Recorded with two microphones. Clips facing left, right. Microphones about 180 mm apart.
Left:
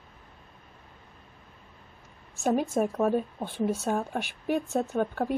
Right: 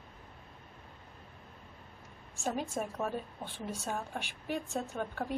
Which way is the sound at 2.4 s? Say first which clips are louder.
Left 10 dB; 65° left (ahead or behind).